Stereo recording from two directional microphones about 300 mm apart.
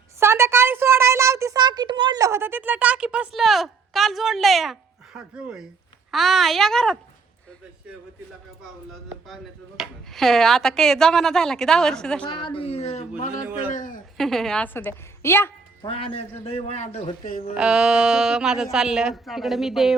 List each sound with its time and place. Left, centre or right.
0.2 s a sound: centre
6.1 s speech: centre
9.0 s speech: centre
12.2 s a man's voice: centre
14.2 s a woman's voice: centre; by 17.4 s left
17.5 s speech: centre